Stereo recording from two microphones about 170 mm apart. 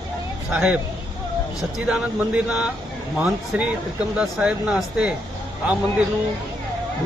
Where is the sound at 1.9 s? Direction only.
5° right (ahead or behind).